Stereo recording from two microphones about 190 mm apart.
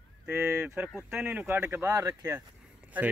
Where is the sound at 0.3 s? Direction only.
15° right (ahead or behind).